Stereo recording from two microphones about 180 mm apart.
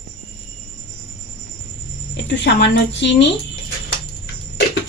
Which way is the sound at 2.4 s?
75° left (ahead or behind).